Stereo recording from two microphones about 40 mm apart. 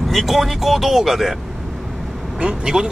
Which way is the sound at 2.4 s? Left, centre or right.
Centre.